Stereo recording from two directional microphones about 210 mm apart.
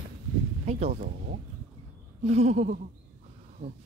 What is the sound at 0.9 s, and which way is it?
Speech, 40° right (ahead or behind).